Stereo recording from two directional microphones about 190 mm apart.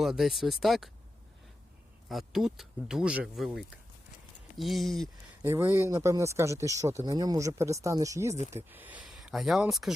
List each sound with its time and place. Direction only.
0.0 s speech: centre (ahead or behind)
2.0 s speech: centre (ahead or behind)
5.4 s speech: 10° right (ahead or behind)